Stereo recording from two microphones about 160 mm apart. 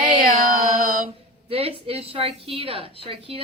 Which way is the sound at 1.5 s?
35° right (ahead or behind).